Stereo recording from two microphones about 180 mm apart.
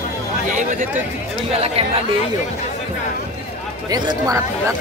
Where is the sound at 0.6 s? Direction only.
45° right (ahead or behind).